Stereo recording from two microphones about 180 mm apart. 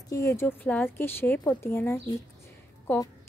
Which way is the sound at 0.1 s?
15° left (ahead or behind).